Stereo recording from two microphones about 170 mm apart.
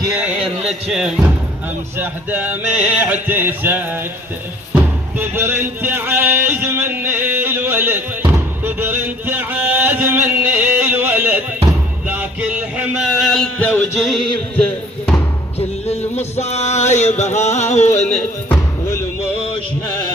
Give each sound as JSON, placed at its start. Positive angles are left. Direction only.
{"t": 0.2, "sound": "music", "side_deg": -5}
{"t": 15.5, "sound": "music", "side_deg": 40}